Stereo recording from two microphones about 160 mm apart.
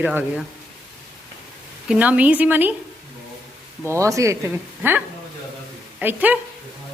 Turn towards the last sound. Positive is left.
turn(degrees=-10)  # may be behind; listen again after turning